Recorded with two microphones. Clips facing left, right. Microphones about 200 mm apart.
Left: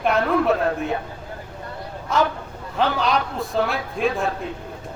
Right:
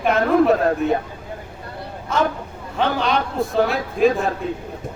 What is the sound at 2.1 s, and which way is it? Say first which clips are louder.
A man's voice: even; centre (ahead or behind).